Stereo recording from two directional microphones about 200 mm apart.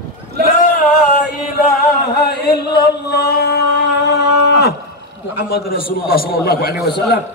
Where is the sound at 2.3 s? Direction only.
55° left (ahead or behind).